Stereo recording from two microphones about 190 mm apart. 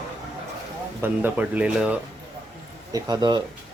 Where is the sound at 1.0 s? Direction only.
10° right (ahead or behind).